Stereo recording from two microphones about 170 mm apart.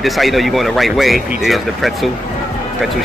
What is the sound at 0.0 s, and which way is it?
Speech, centre (ahead or behind).